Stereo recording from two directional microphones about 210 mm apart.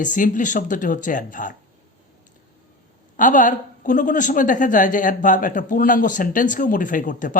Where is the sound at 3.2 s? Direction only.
40° left (ahead or behind).